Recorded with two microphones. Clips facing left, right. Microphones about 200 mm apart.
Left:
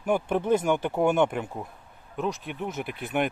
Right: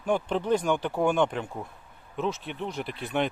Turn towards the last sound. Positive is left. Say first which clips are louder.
# left 1 dB
turn(degrees=5)  # may be behind; listen again after turning